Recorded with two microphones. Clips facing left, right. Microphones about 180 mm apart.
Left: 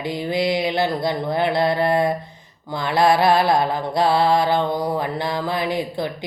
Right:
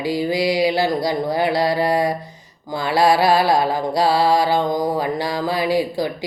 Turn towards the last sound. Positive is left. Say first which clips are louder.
# right 3 dB
turn(degrees=-10)  # may be behind; listen again after turning